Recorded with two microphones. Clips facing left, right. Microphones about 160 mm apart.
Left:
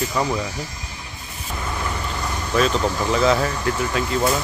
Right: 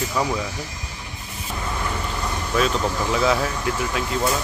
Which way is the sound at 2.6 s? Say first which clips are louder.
Left 2 dB; 5° right (ahead or behind).